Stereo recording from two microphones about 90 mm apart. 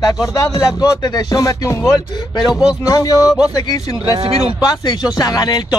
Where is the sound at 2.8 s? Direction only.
40° left (ahead or behind).